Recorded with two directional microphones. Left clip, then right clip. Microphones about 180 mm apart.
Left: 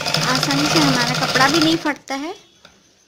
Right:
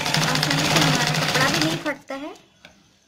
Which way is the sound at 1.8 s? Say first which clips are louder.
Left 5 dB; 50° left (ahead or behind).